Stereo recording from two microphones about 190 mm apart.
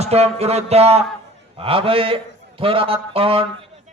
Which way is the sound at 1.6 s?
30° right (ahead or behind).